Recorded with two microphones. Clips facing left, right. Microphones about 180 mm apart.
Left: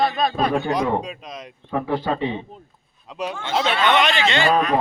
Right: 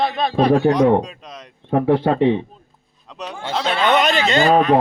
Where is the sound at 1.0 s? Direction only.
10° left (ahead or behind).